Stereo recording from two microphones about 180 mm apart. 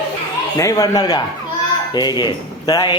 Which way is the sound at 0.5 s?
20° left (ahead or behind).